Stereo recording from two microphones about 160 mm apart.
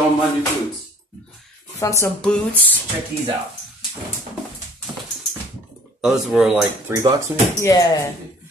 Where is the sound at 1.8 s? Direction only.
20° left (ahead or behind).